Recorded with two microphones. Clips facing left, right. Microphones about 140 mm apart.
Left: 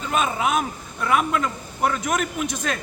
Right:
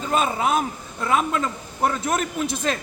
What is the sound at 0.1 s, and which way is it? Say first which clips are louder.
A man's voice: right 1 dB; 30° right (ahead or behind).